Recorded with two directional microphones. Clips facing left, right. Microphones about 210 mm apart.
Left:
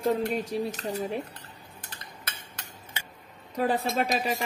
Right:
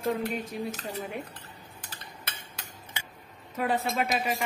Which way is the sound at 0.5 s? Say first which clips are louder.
Left 5 dB; 30° left (ahead or behind).